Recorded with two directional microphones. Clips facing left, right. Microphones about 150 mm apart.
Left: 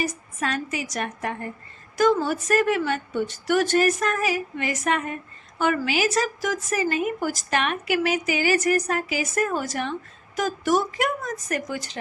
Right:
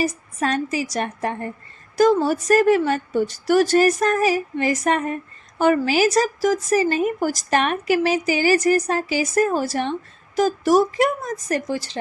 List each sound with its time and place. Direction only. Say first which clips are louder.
0.0 s a woman's voice: right 5 dB; 35° right (ahead or behind)